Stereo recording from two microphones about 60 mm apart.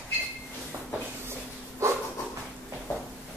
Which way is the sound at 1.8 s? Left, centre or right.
Right.